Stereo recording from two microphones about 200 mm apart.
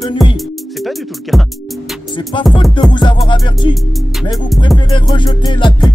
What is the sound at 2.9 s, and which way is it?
Music, 20° left (ahead or behind).